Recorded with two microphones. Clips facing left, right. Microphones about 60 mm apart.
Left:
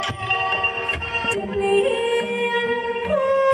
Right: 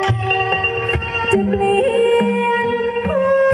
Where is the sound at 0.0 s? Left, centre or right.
Right.